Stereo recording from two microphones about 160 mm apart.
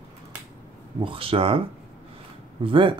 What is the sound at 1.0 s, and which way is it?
Speech, 35° right (ahead or behind).